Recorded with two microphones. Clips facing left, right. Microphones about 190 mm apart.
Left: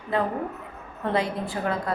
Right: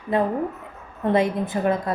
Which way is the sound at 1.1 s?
20° right (ahead or behind).